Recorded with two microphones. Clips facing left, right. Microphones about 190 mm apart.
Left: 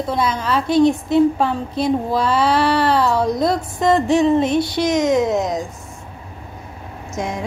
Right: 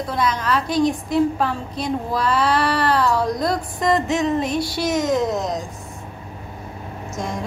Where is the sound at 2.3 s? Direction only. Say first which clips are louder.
Left 1 dB; centre (ahead or behind).